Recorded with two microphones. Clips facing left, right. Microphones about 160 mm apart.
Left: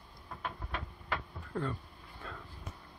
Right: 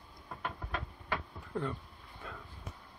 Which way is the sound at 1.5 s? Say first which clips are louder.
Even; 15° right (ahead or behind).